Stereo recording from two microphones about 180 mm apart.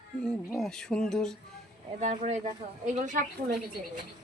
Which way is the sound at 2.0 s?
40° right (ahead or behind).